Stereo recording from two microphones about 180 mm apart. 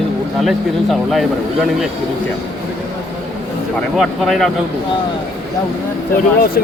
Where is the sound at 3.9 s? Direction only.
Centre (ahead or behind).